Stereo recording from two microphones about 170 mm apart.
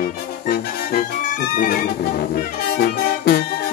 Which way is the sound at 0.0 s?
60° left (ahead or behind).